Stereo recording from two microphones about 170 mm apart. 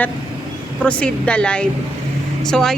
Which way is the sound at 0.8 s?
5° left (ahead or behind).